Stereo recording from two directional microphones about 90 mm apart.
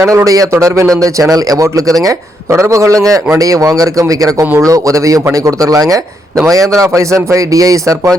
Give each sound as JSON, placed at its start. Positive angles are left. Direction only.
{"t": 0.0, "sound": "a man's voice", "side_deg": -35}